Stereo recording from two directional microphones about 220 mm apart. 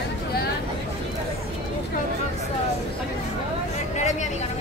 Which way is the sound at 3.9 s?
30° left (ahead or behind).